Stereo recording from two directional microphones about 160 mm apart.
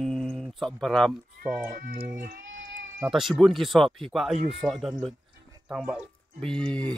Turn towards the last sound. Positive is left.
turn(degrees=5)  # may be behind; listen again after turning